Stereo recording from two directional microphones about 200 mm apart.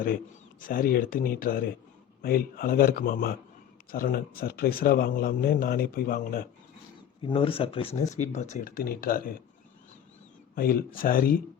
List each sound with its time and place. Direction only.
0.6 s a man's voice: 45° left (ahead or behind)
7.2 s speech: 25° left (ahead or behind); by 9.3 s 45° left (ahead or behind)
10.5 s a man's voice: 50° left (ahead or behind)